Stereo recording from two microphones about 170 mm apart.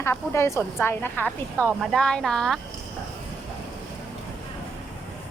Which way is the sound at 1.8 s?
Centre (ahead or behind).